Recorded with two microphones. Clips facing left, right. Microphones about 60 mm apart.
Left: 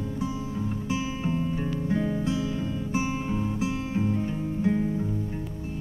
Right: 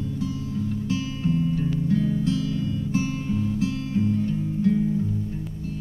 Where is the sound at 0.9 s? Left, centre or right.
Left.